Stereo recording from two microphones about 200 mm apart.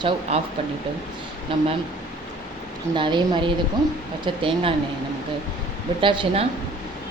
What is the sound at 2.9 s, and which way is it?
Speech, 25° right (ahead or behind).